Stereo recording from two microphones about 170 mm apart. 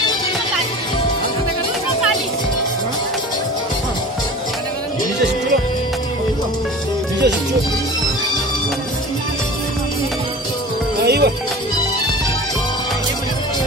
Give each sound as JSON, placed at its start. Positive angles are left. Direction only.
{"t": 11.1, "sound": "music", "side_deg": -70}